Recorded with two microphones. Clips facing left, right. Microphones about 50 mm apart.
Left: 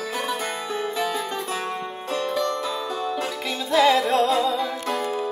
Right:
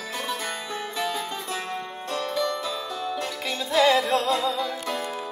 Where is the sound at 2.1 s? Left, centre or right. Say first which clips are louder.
Left 2 dB; centre.